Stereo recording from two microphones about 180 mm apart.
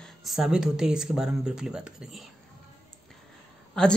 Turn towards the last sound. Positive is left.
turn(degrees=5)  # may be behind; listen again after turning